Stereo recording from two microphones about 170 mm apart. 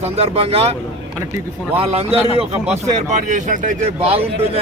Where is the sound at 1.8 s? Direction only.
35° right (ahead or behind).